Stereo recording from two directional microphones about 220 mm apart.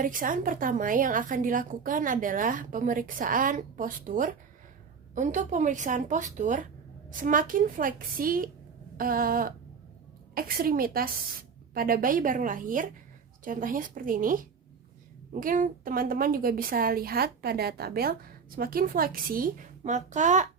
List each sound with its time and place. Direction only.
0.0 s a woman's voice: 35° right (ahead or behind)